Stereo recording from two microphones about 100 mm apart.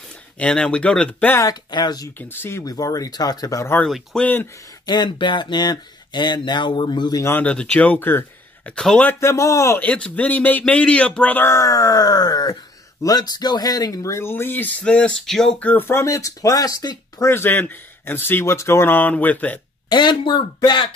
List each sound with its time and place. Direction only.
0.4 s speech: 10° left (ahead or behind)
1.4 s speech: 40° left (ahead or behind)
2.1 s speech: 20° left (ahead or behind)
2.6 s speech: 35° left (ahead or behind)
3.8 s speech: 5° left (ahead or behind)
4.8 s speech: 50° left (ahead or behind)
7.2 s speech: 15° left (ahead or behind)
8.7 s speech: 5° left (ahead or behind)
9.0 s speech: 30° left (ahead or behind)
9.8 s speech: 10° left (ahead or behind)
15.7 s speech: 20° left (ahead or behind); by 17.3 s 35° left (ahead or behind)
17.3 s speech: 20° left (ahead or behind)
19.9 s speech: 50° left (ahead or behind)